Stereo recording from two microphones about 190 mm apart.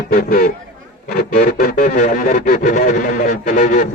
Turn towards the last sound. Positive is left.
turn(degrees=45)  # may be behind; listen again after turning